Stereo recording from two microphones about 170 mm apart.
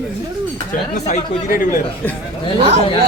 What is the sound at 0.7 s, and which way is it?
Speech, 45° left (ahead or behind).